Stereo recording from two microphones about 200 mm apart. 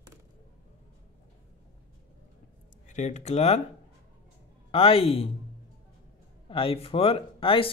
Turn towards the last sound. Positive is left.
turn(degrees=25)  # may be behind; listen again after turning